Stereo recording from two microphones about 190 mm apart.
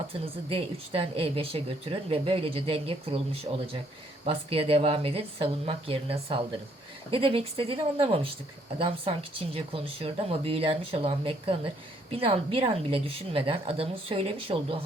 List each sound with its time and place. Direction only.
0.1 s speech: 30° right (ahead or behind)